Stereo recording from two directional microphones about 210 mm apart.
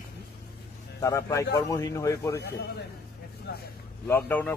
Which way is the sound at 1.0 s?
15° left (ahead or behind).